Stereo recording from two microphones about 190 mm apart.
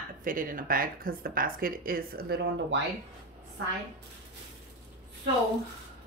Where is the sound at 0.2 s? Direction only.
45° right (ahead or behind).